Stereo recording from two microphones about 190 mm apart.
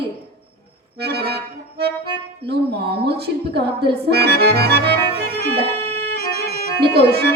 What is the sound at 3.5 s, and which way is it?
Accordion, 60° right (ahead or behind).